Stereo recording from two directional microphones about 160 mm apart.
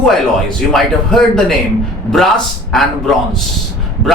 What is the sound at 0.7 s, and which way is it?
Speech, 5° left (ahead or behind).